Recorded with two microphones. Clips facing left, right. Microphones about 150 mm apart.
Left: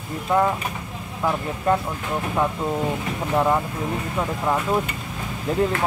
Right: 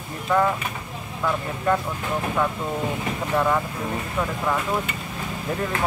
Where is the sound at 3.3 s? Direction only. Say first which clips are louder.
Left 2 dB; 20° left (ahead or behind).